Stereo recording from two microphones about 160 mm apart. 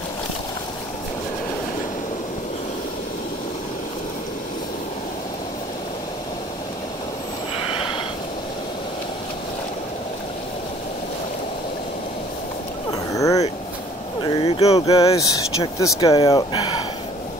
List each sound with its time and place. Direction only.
7.7 s snort: 30° left (ahead or behind)
13.1 s vehicle: 20° left (ahead or behind)
14.2 s a sound: 35° left (ahead or behind)
14.9 s speech: 20° left (ahead or behind)